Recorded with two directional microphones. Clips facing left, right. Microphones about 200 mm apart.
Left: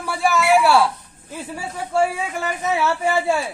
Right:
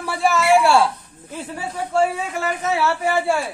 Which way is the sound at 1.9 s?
10° left (ahead or behind).